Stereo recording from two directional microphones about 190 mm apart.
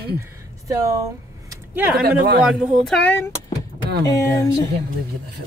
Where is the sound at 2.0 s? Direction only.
55° right (ahead or behind).